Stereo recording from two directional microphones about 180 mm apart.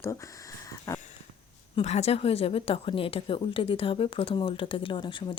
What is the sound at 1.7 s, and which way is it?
A woman's voice, 35° left (ahead or behind).